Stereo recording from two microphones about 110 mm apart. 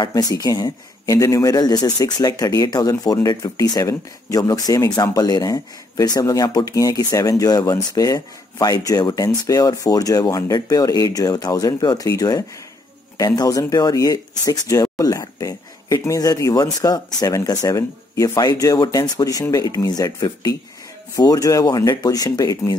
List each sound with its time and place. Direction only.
0.1 s speech: 35° left (ahead or behind)